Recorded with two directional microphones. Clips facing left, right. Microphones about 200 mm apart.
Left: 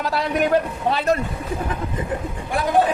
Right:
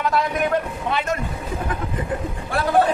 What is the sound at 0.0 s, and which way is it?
A man's voice, 35° left (ahead or behind).